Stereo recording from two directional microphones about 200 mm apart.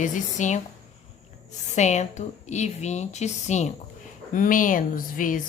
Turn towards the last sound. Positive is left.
turn(degrees=40)  # may be behind; listen again after turning